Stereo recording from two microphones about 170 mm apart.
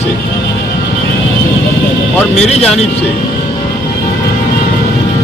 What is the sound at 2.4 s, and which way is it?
Speech, 40° left (ahead or behind).